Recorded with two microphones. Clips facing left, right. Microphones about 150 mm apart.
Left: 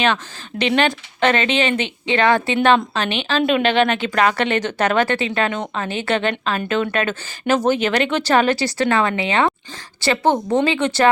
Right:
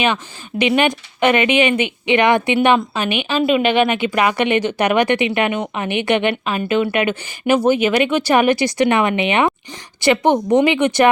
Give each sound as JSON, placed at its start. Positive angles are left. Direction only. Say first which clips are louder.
{"t": 0.6, "sound": "speech", "louder": "right 2 dB", "side_deg": -10}